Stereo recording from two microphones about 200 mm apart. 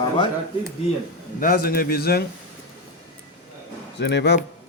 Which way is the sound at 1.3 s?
45° left (ahead or behind).